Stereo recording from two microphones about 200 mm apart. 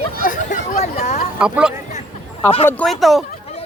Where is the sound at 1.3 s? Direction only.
5° right (ahead or behind).